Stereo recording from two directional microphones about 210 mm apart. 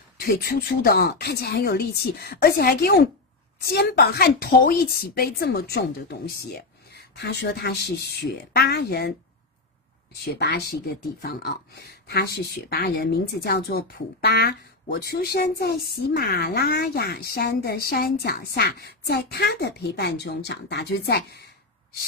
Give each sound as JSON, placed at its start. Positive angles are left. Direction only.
{"t": 0.2, "sound": "speech", "side_deg": 45}
{"t": 10.2, "sound": "speech", "side_deg": 50}